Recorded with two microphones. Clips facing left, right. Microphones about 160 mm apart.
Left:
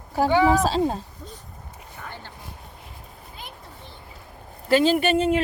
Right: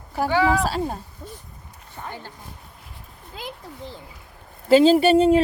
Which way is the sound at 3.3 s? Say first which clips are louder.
Right 8 dB; 90° right.